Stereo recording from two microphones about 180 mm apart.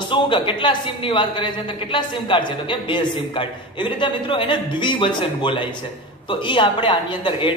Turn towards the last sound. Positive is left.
turn(degrees=25)  # may be behind; listen again after turning